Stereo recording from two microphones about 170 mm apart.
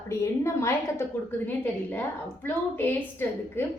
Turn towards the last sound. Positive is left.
turn(degrees=10)  # may be behind; listen again after turning